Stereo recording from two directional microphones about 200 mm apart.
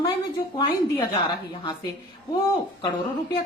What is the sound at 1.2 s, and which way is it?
Speech, 25° left (ahead or behind).